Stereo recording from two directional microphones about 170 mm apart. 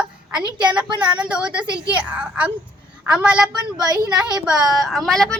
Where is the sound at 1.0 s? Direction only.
5° right (ahead or behind).